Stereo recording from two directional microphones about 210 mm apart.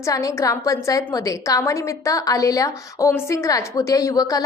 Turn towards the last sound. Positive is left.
turn(degrees=15)  # may be behind; listen again after turning